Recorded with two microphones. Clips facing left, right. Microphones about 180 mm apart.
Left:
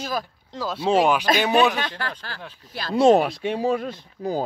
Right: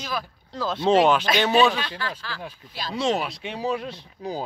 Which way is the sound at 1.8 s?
50° left (ahead or behind).